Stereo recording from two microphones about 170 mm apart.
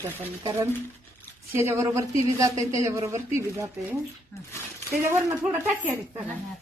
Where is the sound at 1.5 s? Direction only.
15° right (ahead or behind).